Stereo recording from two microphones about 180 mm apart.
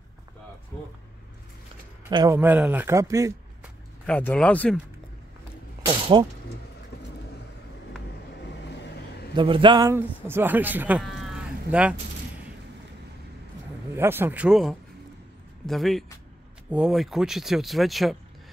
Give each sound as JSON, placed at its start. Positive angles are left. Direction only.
{"t": 2.0, "sound": "a man's voice", "side_deg": -20}
{"t": 2.3, "sound": "a man's voice", "side_deg": -10}
{"t": 4.0, "sound": "speech", "side_deg": 5}
{"t": 5.9, "sound": "a sound", "side_deg": -30}
{"t": 9.3, "sound": "a man's voice", "side_deg": -25}
{"t": 13.9, "sound": "a man's voice", "side_deg": -10}